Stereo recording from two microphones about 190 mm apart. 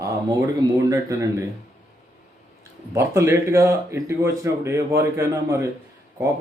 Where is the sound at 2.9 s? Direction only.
15° right (ahead or behind).